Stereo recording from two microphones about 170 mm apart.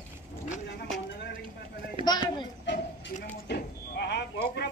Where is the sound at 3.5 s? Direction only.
75° left (ahead or behind).